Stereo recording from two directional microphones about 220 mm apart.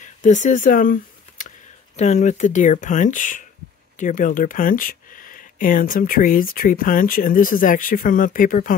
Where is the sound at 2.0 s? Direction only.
30° left (ahead or behind).